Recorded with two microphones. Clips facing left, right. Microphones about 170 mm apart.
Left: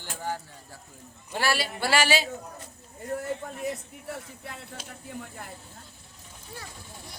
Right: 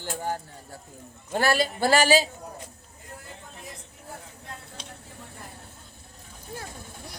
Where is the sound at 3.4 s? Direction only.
75° left (ahead or behind).